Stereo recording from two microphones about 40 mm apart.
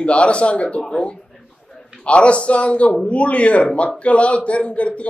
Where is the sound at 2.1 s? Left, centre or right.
Left.